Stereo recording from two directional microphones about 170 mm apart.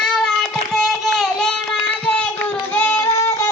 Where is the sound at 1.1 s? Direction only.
Centre (ahead or behind).